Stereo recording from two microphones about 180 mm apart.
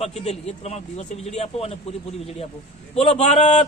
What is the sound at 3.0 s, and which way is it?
Speech, 35° left (ahead or behind).